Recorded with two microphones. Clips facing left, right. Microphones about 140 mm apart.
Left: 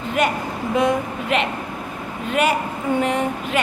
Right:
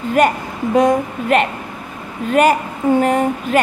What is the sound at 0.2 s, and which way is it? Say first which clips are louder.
Speech: right 6 dB; 45° right (ahead or behind).